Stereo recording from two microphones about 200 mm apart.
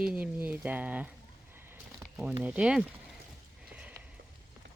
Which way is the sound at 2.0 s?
5° right (ahead or behind).